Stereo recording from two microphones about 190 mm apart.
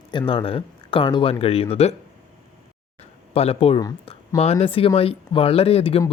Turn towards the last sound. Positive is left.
turn(degrees=30)  # may be behind; listen again after turning